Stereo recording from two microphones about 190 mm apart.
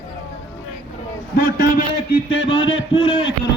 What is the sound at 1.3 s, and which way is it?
Speech, 50° left (ahead or behind).